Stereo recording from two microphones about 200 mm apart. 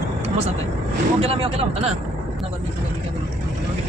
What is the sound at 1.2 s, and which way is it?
Speech, 30° right (ahead or behind).